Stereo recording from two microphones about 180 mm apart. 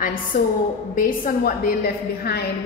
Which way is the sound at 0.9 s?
50° left (ahead or behind).